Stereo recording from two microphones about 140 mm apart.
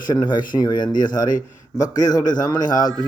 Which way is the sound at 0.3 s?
30° left (ahead or behind).